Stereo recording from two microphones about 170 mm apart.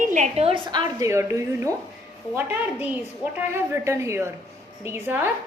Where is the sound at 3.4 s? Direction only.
15° right (ahead or behind).